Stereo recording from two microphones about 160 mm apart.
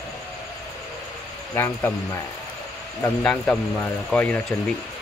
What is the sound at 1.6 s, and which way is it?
A man's voice, 15° left (ahead or behind).